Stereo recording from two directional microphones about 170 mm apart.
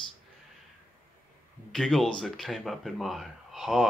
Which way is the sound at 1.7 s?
5° left (ahead or behind).